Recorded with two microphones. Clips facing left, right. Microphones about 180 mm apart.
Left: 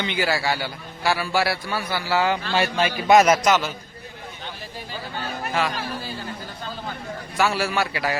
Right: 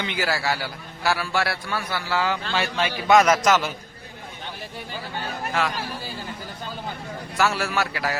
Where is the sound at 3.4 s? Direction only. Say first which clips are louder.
Even; 5° right (ahead or behind).